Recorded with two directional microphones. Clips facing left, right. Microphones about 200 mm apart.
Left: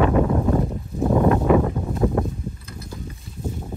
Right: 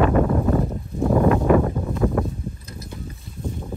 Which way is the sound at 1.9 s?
25° left (ahead or behind).